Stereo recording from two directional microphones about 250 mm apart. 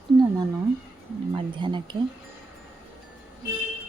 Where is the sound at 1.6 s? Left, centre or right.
Centre.